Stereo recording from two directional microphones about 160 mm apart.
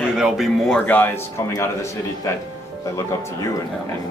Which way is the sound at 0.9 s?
10° left (ahead or behind).